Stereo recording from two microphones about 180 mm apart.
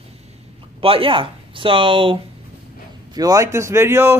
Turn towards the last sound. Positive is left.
turn(degrees=-15)  # may be behind; listen again after turning